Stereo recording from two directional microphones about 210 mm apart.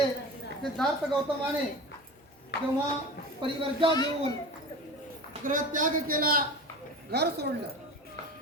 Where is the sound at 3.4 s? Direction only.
25° right (ahead or behind).